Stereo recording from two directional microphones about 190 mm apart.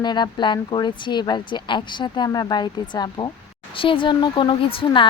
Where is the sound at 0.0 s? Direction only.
25° left (ahead or behind).